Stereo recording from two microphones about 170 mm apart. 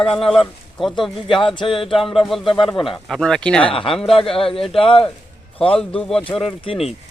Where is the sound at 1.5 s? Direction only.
30° left (ahead or behind).